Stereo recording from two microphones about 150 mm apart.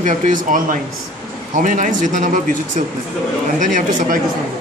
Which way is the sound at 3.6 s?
60° right (ahead or behind).